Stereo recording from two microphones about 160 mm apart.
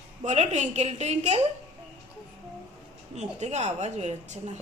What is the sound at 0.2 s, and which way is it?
A woman's voice, 45° right (ahead or behind).